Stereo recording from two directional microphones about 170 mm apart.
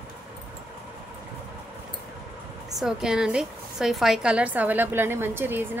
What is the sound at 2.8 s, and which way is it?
A woman's voice, 5° right (ahead or behind).